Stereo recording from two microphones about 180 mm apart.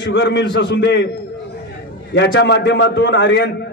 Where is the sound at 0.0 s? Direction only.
75° left (ahead or behind).